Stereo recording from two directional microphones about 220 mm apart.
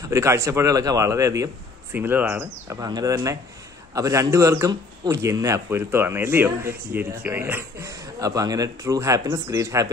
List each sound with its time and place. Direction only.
0.1 s speech: 15° right (ahead or behind)